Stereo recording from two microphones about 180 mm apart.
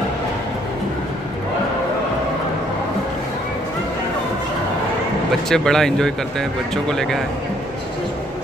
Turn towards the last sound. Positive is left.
turn(degrees=5)  # may be behind; listen again after turning